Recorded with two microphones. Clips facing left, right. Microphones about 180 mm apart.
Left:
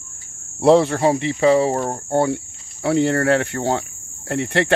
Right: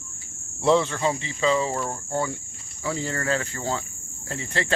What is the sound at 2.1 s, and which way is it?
Speech, 65° left (ahead or behind).